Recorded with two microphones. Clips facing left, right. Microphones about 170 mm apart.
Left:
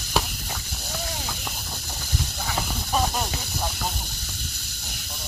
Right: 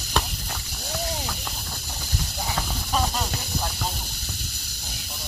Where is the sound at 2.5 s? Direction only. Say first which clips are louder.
Left 1 dB; 15° left (ahead or behind).